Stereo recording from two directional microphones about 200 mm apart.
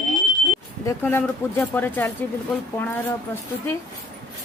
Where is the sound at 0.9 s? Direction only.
10° left (ahead or behind).